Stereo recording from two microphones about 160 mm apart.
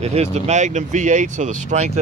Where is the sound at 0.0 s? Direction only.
45° right (ahead or behind).